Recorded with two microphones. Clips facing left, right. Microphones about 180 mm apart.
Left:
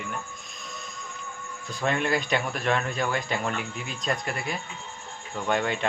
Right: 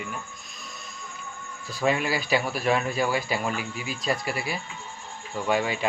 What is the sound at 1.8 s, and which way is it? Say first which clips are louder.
A man's voice: right 1 dB; 5° right (ahead or behind).